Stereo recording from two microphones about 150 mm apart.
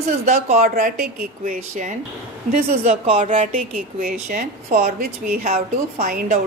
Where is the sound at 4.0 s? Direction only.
65° right (ahead or behind); by 6.0 s 45° right (ahead or behind).